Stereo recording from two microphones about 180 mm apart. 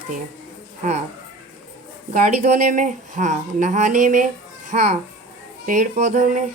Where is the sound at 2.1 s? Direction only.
45° right (ahead or behind).